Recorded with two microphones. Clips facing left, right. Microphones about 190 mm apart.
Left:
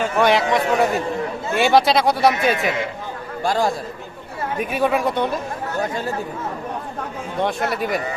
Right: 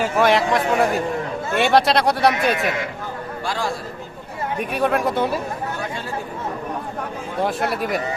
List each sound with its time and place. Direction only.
0.0 s speech: centre (ahead or behind)
3.4 s a man's voice: 45° left (ahead or behind)
4.6 s speech: centre (ahead or behind)
7.4 s speech: centre (ahead or behind)